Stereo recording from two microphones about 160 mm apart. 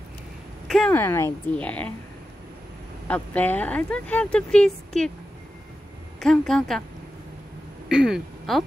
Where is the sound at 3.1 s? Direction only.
10° left (ahead or behind).